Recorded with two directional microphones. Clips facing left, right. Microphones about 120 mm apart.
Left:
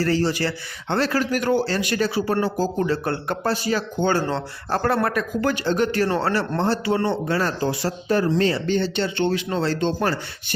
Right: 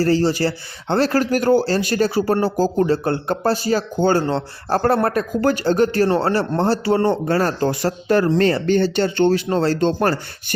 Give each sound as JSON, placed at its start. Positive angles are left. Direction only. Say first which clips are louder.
{"t": 0.0, "sound": "a man's voice", "louder": "right 4 dB", "side_deg": -30}
{"t": 8.0, "sound": "speech", "louder": "right 4 dB", "side_deg": -65}